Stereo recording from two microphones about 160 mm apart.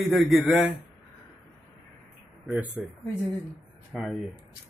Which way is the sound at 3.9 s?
Centre (ahead or behind).